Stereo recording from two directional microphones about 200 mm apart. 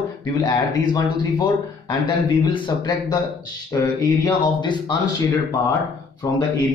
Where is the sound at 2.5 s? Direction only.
20° left (ahead or behind).